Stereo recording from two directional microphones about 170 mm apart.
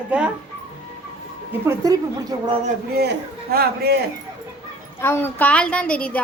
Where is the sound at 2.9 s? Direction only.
70° right (ahead or behind).